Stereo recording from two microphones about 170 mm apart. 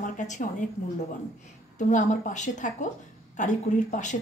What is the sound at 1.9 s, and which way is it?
Speech, 45° left (ahead or behind).